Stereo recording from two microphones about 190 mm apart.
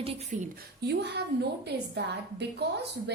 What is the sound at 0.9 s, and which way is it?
A woman's voice, 60° right (ahead or behind).